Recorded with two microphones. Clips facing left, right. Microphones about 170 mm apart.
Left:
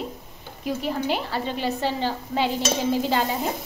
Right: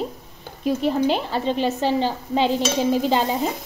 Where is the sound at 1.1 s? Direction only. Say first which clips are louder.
Right 4 dB; 20° right (ahead or behind).